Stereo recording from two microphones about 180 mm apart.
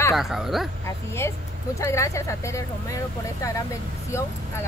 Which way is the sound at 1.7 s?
15° left (ahead or behind).